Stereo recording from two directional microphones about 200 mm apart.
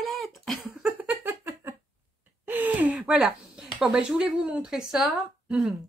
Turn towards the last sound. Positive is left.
turn(degrees=-5)  # may be behind; listen again after turning